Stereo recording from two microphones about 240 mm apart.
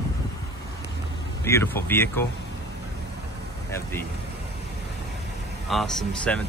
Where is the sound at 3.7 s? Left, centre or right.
Centre.